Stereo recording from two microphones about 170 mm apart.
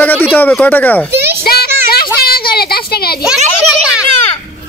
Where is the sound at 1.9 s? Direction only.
60° left (ahead or behind).